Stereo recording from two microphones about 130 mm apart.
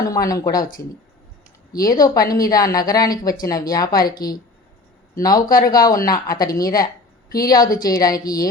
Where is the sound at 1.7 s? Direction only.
30° left (ahead or behind).